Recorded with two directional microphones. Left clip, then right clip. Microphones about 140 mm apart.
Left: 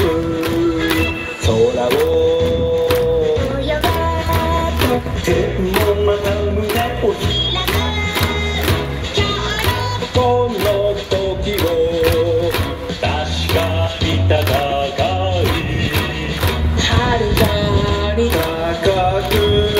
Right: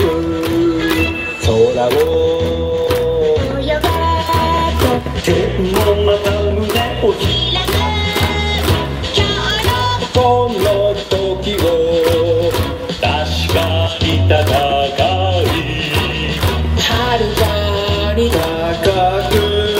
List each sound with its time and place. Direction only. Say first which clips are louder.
1.5 s music: right 2 dB; 20° right (ahead or behind)
4.0 s music: right 4 dB; 20° right (ahead or behind)
14.3 s music: right 3 dB; 20° right (ahead or behind)
16.8 s music: right 2 dB; 20° right (ahead or behind)